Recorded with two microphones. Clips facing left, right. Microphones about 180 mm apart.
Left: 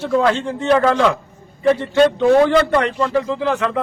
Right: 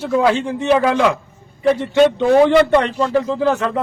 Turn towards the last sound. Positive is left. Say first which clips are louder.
# right 2 dB
turn(degrees=-35)  # may be behind; listen again after turning